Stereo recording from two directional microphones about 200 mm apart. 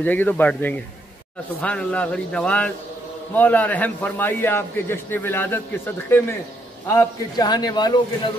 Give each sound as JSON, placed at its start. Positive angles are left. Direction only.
{"t": 0.0, "sound": "a man's voice", "side_deg": 10}